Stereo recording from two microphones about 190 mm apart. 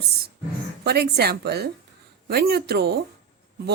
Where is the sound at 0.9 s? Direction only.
55° right (ahead or behind).